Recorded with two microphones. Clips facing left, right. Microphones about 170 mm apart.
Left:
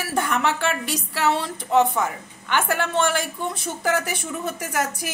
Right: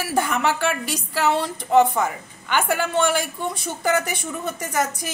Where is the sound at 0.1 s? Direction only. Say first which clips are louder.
Right 1 dB; centre (ahead or behind).